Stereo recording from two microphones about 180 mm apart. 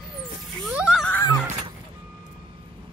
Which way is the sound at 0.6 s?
Centre (ahead or behind).